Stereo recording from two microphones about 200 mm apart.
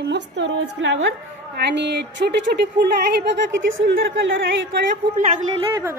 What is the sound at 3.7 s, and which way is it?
Speech, 75° right (ahead or behind).